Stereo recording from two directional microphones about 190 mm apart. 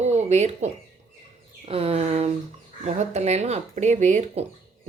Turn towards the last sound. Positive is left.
turn(degrees=-40)  # may be behind; listen again after turning